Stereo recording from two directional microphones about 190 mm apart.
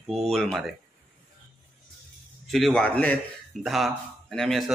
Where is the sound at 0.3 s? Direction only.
Centre (ahead or behind).